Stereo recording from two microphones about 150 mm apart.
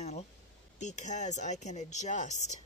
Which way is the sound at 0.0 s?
50° left (ahead or behind).